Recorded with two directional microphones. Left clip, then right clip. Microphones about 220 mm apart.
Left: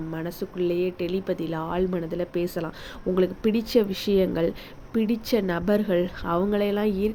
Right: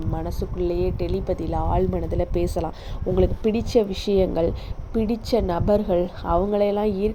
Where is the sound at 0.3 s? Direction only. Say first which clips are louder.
Even; 10° left (ahead or behind).